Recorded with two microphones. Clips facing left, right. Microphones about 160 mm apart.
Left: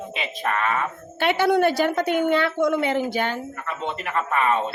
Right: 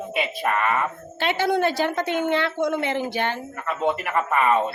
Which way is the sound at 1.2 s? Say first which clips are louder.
Left 3 dB; 55° left (ahead or behind).